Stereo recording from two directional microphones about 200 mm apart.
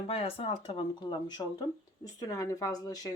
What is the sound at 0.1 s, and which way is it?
Speech, 30° left (ahead or behind).